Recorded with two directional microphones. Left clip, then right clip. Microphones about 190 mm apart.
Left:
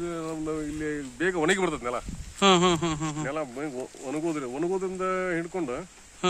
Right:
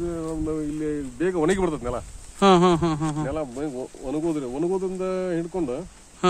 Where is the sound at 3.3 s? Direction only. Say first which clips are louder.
Right 3 dB; 15° right (ahead or behind).